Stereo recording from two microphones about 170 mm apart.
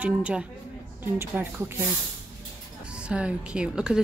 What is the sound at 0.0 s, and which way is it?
Speech, 5° right (ahead or behind).